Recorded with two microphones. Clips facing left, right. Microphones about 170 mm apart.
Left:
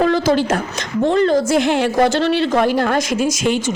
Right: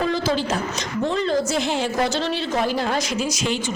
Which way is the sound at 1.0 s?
60° left (ahead or behind).